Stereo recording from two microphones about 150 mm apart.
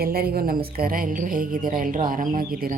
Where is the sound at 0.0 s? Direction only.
85° right.